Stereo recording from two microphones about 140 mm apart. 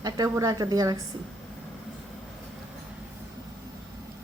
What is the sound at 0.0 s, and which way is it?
A woman's voice, 25° right (ahead or behind).